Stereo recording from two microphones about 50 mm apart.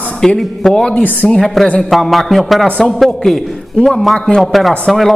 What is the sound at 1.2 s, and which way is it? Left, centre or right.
Speech, centre.